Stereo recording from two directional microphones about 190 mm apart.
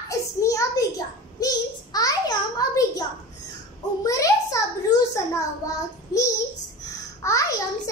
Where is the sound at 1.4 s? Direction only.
20° left (ahead or behind).